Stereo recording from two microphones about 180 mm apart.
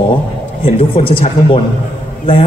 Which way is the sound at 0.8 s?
30° left (ahead or behind).